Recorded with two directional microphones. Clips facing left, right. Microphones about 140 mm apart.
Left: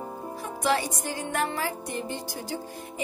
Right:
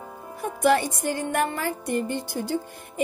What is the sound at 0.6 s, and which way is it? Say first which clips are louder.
A woman's voice: right 6 dB; 55° right (ahead or behind).